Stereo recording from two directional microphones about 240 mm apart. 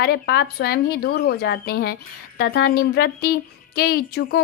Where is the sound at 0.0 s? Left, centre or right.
Left.